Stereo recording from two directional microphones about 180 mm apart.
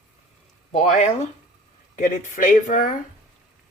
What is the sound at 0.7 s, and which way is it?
Speech, 40° left (ahead or behind).